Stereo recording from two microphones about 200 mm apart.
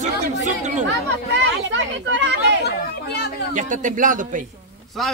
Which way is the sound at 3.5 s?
40° right (ahead or behind).